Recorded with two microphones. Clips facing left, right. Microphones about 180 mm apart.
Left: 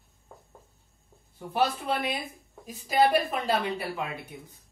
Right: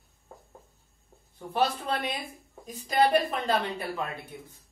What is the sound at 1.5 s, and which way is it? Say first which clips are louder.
Speech: left 1 dB; 10° left (ahead or behind).